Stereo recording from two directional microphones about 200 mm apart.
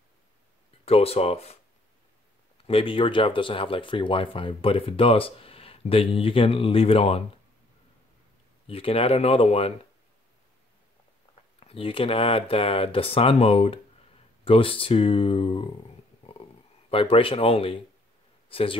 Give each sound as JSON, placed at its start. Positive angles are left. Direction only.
{"t": 0.8, "sound": "speech", "side_deg": 30}
{"t": 8.6, "sound": "speech", "side_deg": 30}
{"t": 11.6, "sound": "speech", "side_deg": 30}
{"t": 16.9, "sound": "a man's voice", "side_deg": 25}